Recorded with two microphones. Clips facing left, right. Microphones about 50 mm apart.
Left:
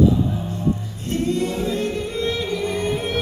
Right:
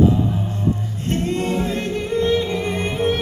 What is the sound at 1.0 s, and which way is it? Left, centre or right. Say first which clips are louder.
Music: even; right.